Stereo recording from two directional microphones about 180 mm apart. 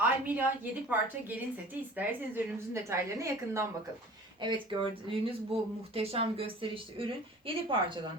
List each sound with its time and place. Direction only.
0.0 s a woman's voice: 10° right (ahead or behind)
4.4 s speech: 25° right (ahead or behind)